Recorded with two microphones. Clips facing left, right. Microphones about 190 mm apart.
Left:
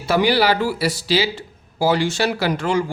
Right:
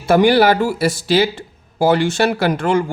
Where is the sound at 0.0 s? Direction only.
50° right (ahead or behind).